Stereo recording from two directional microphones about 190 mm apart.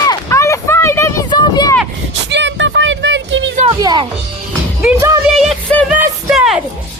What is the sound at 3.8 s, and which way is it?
Music, 20° right (ahead or behind).